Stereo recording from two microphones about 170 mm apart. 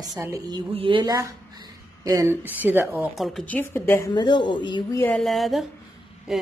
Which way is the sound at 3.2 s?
5° left (ahead or behind).